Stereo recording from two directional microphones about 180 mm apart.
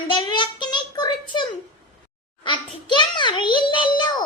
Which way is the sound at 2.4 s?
25° left (ahead or behind).